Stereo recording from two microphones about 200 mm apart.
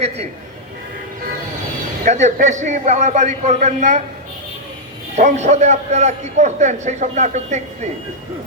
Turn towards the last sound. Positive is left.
turn(degrees=-35)  # may be behind; listen again after turning